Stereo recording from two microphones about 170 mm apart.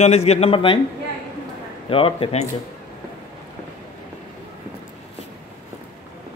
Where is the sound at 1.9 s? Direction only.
35° left (ahead or behind).